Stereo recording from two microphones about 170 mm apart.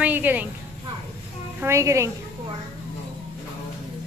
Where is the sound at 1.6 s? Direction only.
15° right (ahead or behind).